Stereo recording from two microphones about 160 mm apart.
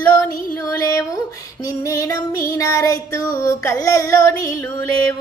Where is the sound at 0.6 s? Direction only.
20° left (ahead or behind).